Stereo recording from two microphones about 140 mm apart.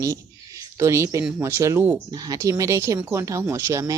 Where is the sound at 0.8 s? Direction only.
20° right (ahead or behind).